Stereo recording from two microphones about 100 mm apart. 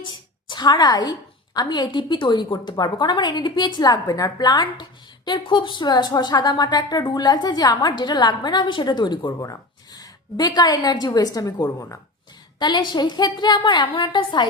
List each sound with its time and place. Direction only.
0.1 s a woman's voice: 50° left (ahead or behind)
9.4 s a woman's voice: 35° left (ahead or behind)
12.5 s a woman's voice: 45° left (ahead or behind)